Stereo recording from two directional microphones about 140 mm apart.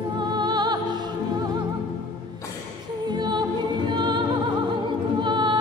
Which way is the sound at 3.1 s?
30° right (ahead or behind).